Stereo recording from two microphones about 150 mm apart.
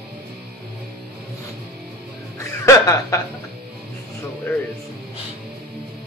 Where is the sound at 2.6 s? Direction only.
20° left (ahead or behind).